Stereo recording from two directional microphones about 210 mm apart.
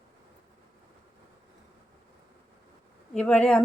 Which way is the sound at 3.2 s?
5° left (ahead or behind).